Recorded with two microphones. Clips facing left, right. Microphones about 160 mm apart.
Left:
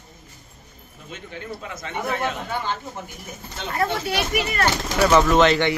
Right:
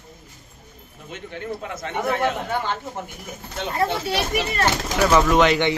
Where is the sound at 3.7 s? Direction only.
30° right (ahead or behind).